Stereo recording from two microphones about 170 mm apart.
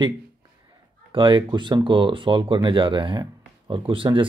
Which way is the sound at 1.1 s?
30° right (ahead or behind).